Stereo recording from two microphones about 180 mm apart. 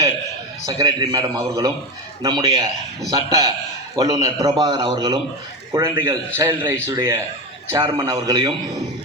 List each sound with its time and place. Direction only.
0.6 s a man's voice: 20° right (ahead or behind)